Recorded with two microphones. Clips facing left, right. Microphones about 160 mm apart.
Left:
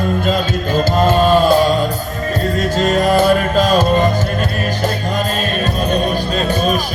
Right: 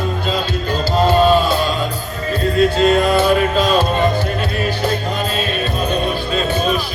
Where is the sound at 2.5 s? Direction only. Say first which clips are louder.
Right 4 dB; 40° left (ahead or behind).